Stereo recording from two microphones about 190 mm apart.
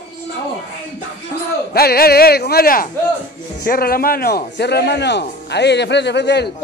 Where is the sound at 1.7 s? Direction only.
55° left (ahead or behind).